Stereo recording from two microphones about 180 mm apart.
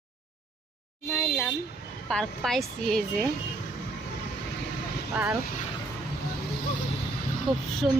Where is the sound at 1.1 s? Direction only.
10° left (ahead or behind).